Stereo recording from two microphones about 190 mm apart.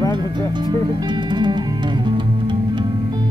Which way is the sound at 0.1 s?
25° right (ahead or behind).